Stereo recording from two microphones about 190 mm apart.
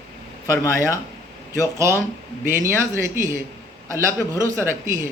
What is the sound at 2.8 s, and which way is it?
A man's voice, 15° right (ahead or behind).